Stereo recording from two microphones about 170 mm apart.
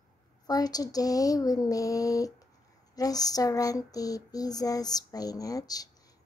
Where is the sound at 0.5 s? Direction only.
20° left (ahead or behind).